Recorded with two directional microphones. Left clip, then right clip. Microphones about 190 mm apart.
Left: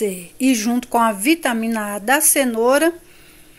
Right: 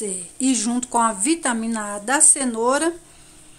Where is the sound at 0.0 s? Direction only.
20° left (ahead or behind).